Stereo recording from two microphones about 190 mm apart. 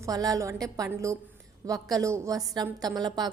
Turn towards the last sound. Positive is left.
turn(degrees=-20)  # may be behind; listen again after turning